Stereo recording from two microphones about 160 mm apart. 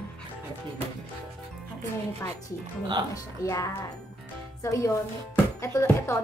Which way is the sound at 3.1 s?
20° left (ahead or behind).